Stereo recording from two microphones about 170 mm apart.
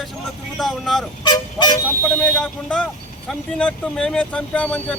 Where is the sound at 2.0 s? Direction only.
10° left (ahead or behind).